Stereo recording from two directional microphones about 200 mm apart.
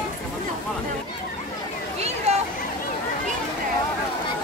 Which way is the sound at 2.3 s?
30° right (ahead or behind).